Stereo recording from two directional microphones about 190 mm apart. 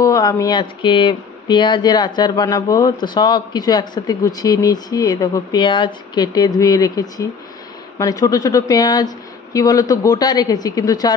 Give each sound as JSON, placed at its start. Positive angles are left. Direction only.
{"t": 0.0, "sound": "speech", "side_deg": 20}